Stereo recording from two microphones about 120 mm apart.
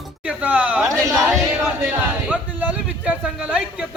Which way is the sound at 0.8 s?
25° right (ahead or behind).